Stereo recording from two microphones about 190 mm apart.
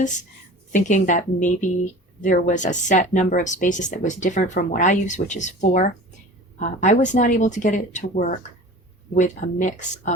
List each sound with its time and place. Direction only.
0.7 s speech: 40° left (ahead or behind)